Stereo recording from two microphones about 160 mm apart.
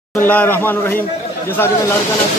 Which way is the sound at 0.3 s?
10° left (ahead or behind).